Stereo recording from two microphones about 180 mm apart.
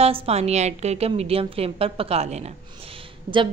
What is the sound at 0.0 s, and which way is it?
A woman's voice, 35° right (ahead or behind).